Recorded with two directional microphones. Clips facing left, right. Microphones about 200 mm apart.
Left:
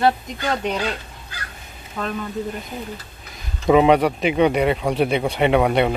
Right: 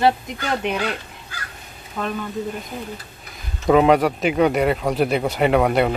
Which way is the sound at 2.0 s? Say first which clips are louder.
Even; 5° right (ahead or behind).